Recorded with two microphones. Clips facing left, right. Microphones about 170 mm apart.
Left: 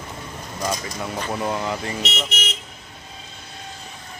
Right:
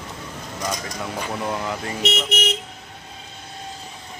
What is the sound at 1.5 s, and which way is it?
Speech, centre (ahead or behind).